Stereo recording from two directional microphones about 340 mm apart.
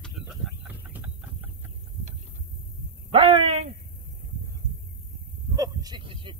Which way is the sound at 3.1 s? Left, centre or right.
Centre.